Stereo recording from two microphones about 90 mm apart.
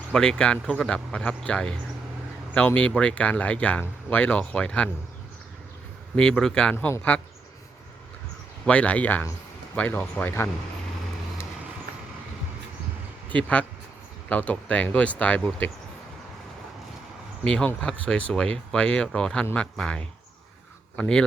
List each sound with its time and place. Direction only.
0.1 s speech: 10° left (ahead or behind)
6.1 s speech: 10° left (ahead or behind)
8.6 s speech: 15° left (ahead or behind)
13.2 s speech: 15° left (ahead or behind)
17.4 s speech: 10° left (ahead or behind)